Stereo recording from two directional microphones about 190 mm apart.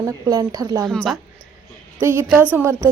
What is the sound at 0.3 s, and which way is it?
Speech, 20° right (ahead or behind).